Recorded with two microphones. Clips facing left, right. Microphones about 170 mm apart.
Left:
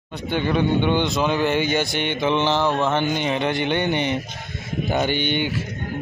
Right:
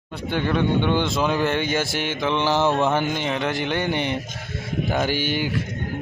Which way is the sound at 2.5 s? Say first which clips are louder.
Right 1 dB; 15° right (ahead or behind).